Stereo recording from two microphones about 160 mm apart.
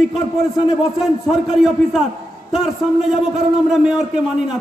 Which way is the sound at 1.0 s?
5° right (ahead or behind).